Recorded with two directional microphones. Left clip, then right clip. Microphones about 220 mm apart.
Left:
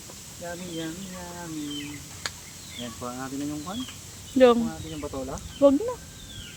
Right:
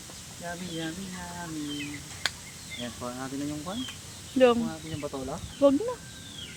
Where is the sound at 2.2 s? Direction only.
30° right (ahead or behind).